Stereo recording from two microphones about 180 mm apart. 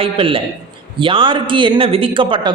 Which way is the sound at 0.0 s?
30° right (ahead or behind).